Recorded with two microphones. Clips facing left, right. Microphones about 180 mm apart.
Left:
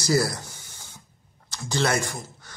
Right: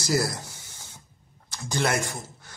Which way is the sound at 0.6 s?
75° right (ahead or behind).